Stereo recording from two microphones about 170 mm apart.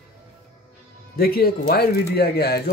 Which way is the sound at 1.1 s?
60° left (ahead or behind).